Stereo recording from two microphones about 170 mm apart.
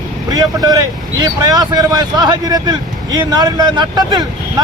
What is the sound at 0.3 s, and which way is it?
Speech, 20° right (ahead or behind).